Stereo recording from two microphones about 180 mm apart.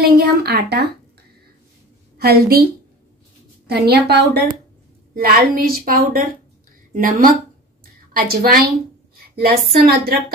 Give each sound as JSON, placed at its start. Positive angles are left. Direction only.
{"t": 0.0, "sound": "speech", "side_deg": -60}
{"t": 2.1, "sound": "a woman's voice", "side_deg": -60}
{"t": 7.8, "sound": "a sound", "side_deg": -55}
{"t": 9.7, "sound": "a woman's voice", "side_deg": -55}